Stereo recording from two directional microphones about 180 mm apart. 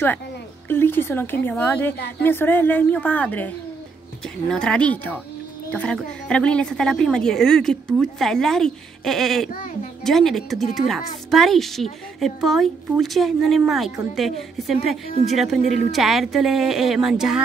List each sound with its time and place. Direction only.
0.7 s a woman's voice: 10° left (ahead or behind)
2.0 s a woman's voice: 65° left (ahead or behind)
2.2 s a woman's voice: 10° left (ahead or behind)